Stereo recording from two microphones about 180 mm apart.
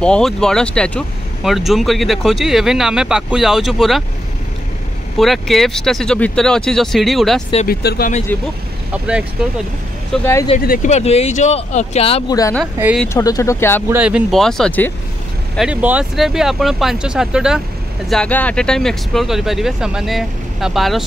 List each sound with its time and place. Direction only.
0.0 s speech: 5° left (ahead or behind)
5.1 s speech: centre (ahead or behind)
7.6 s speech: 60° left (ahead or behind)
8.3 s speech: 10° left (ahead or behind)
8.9 s speech: 5° right (ahead or behind)
10.1 s speech: 10° left (ahead or behind)
10.6 s speech: 50° left (ahead or behind); by 12.4 s 35° left (ahead or behind)
13.1 s speech: 20° left (ahead or behind)
13.8 s speech: 10° right (ahead or behind)
18.1 s speech: 5° left (ahead or behind)